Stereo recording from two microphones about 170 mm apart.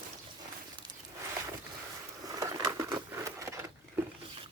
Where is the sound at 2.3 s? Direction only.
20° right (ahead or behind).